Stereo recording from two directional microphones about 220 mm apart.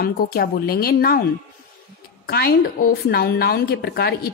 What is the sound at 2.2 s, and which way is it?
A woman's voice, 45° left (ahead or behind).